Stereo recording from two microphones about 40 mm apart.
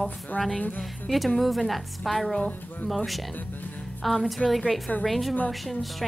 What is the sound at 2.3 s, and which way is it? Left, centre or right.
Speech, left.